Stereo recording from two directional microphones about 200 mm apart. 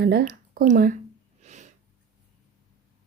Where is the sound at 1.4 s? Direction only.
35° right (ahead or behind).